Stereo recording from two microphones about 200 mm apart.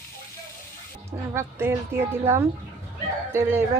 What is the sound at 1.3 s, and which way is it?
Speech, 10° right (ahead or behind).